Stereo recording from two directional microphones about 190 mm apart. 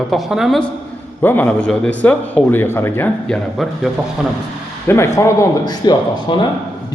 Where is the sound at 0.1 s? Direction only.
Centre (ahead or behind).